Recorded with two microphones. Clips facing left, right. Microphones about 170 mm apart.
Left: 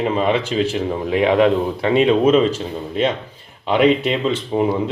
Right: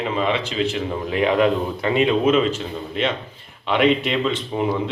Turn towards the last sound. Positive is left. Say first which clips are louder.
# left 5 dB
turn(degrees=25)  # may be behind; listen again after turning